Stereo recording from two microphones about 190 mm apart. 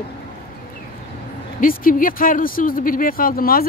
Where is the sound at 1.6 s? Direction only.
45° left (ahead or behind).